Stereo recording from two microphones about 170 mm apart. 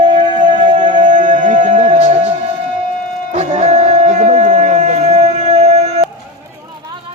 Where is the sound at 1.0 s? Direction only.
45° right (ahead or behind).